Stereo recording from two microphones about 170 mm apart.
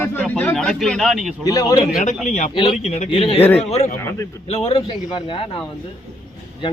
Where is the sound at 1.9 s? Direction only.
50° left (ahead or behind).